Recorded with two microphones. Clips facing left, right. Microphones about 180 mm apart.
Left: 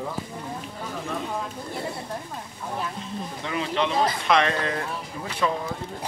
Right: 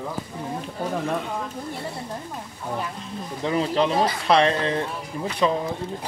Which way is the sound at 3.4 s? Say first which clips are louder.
Right 5 dB; 35° right (ahead or behind).